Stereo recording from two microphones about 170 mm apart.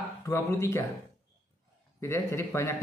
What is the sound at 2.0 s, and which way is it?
Speech, 15° left (ahead or behind).